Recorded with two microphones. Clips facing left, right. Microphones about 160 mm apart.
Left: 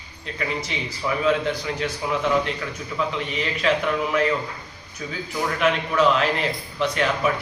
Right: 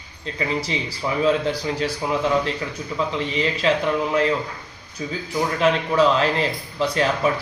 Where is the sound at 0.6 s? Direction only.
30° right (ahead or behind).